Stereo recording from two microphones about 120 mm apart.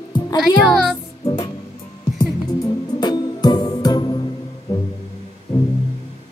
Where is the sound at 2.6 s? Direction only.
35° left (ahead or behind).